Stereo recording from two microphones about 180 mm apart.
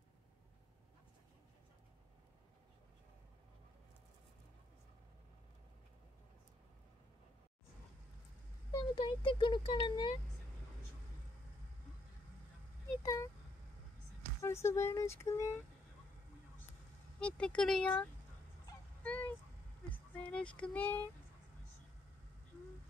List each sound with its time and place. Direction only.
8.7 s speech: 25° left (ahead or behind)
13.0 s speech: 20° left (ahead or behind)
14.4 s speech: 15° left (ahead or behind)
17.2 s speech: 5° left (ahead or behind)
19.0 s vehicle: 10° left (ahead or behind)
19.9 s speech: 10° left (ahead or behind)